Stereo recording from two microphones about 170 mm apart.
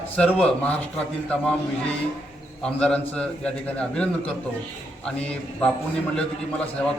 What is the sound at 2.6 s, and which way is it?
A man's voice, 5° left (ahead or behind).